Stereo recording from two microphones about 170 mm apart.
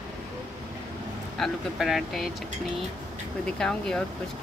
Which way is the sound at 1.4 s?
Centre (ahead or behind).